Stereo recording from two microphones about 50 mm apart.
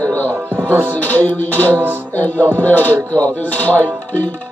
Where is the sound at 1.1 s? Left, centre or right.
Left.